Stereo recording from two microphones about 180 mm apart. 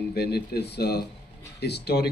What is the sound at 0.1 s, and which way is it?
A man's voice, 65° left (ahead or behind).